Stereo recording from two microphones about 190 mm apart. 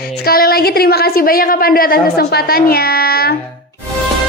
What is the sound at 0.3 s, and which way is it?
A woman's voice, 55° left (ahead or behind).